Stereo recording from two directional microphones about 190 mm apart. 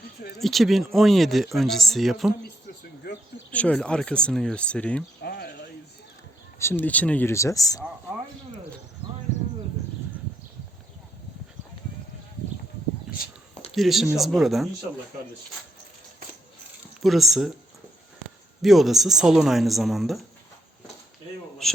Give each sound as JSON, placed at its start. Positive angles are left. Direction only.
{"t": 0.3, "sound": "speech", "side_deg": 0}
{"t": 3.1, "sound": "a sound", "side_deg": 55}
{"t": 3.5, "sound": "speech", "side_deg": 5}
{"t": 5.2, "sound": "a sound", "side_deg": 55}
{"t": 6.6, "sound": "speech", "side_deg": 10}
{"t": 13.1, "sound": "a sound", "side_deg": -5}
{"t": 13.7, "sound": "speech", "side_deg": 0}
{"t": 17.0, "sound": "speech", "side_deg": 0}
{"t": 18.6, "sound": "speech", "side_deg": 0}
{"t": 21.6, "sound": "a man's voice", "side_deg": 5}